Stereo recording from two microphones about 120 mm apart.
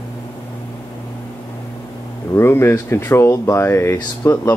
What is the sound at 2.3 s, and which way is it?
Speech, 20° left (ahead or behind).